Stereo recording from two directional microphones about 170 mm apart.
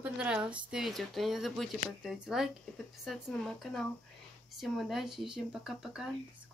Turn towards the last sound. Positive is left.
turn(degrees=-5)  # may be behind; listen again after turning